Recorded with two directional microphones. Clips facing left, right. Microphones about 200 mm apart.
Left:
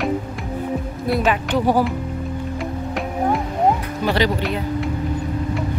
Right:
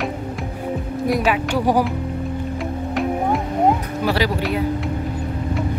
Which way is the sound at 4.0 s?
5° right (ahead or behind).